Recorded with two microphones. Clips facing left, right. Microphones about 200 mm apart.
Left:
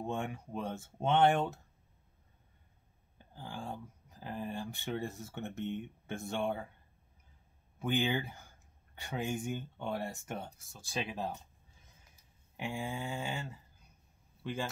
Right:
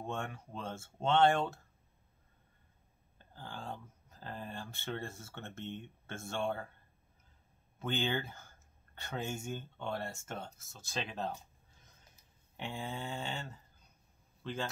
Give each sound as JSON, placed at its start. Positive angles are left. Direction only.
{"t": 0.0, "sound": "speech", "side_deg": 15}
{"t": 3.2, "sound": "speech", "side_deg": 15}
{"t": 7.8, "sound": "speech", "side_deg": 15}
{"t": 12.5, "sound": "speech", "side_deg": 10}